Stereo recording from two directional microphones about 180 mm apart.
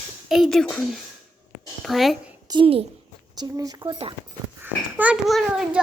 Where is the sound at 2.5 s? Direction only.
30° right (ahead or behind).